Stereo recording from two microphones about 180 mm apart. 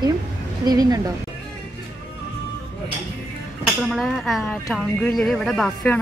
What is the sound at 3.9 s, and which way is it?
Speech, centre (ahead or behind).